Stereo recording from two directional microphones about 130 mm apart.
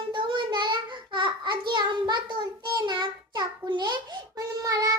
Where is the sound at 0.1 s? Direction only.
35° right (ahead or behind).